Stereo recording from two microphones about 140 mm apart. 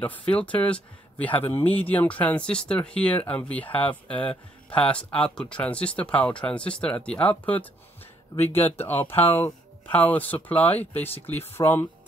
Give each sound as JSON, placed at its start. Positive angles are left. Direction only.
{"t": 0.0, "sound": "speech", "side_deg": 10}